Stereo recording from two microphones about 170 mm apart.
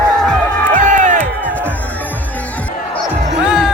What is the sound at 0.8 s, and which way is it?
Crowd, 45° right (ahead or behind).